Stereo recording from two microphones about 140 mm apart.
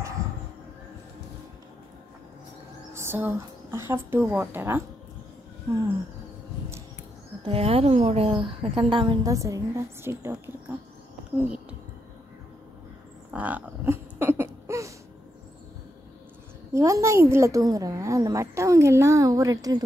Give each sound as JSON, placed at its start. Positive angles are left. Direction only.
{"t": 2.9, "sound": "speech", "side_deg": -15}
{"t": 7.4, "sound": "a woman's voice", "side_deg": -45}
{"t": 9.3, "sound": "a woman's voice", "side_deg": -20}
{"t": 13.3, "sound": "a sound", "side_deg": -10}
{"t": 16.7, "sound": "a woman's voice", "side_deg": -20}